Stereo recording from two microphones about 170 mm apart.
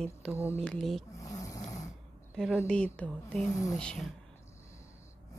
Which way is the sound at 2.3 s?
Centre (ahead or behind).